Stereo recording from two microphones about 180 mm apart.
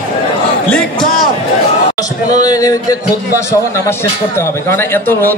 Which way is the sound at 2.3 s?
20° left (ahead or behind).